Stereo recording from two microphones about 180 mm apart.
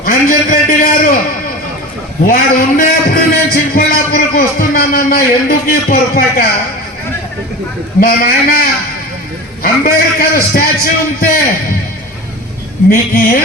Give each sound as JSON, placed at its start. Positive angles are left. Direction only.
{"t": 0.0, "sound": "a man's voice", "side_deg": 50}
{"t": 2.2, "sound": "a sound", "side_deg": 50}
{"t": 8.0, "sound": "a man's voice", "side_deg": 55}
{"t": 9.8, "sound": "a man's voice", "side_deg": 55}
{"t": 12.9, "sound": "a man's voice", "side_deg": 50}